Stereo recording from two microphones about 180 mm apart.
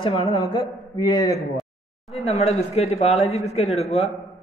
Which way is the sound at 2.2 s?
35° left (ahead or behind).